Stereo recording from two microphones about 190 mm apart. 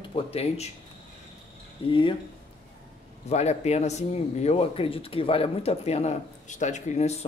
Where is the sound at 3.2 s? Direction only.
35° left (ahead or behind).